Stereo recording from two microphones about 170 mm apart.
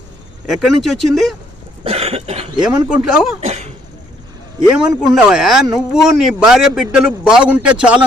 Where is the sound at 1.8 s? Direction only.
35° right (ahead or behind).